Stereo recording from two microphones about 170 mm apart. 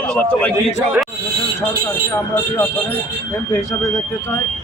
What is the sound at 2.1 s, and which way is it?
Speech, 15° left (ahead or behind).